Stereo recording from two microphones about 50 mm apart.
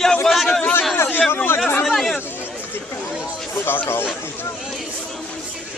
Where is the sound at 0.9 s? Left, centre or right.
Left.